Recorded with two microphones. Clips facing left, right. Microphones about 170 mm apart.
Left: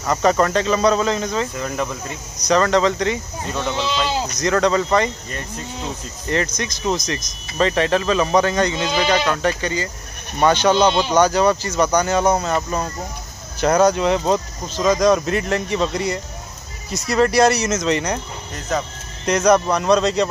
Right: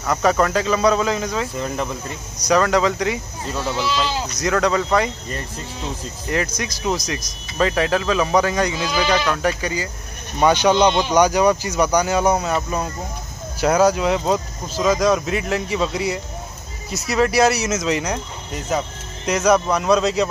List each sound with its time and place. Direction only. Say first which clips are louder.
0.0 s speech: left 1 dB; centre (ahead or behind)
3.7 s speech: right 2 dB; 25° left (ahead or behind)
4.0 s speech: left 2 dB; 5° right (ahead or behind)
6.2 s speech: left 1 dB; 5° right (ahead or behind)